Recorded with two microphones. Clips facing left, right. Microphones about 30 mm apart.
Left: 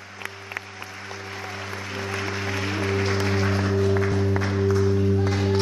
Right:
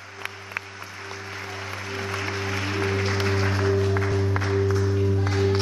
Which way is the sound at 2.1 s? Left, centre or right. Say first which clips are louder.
Left 1 dB; centre.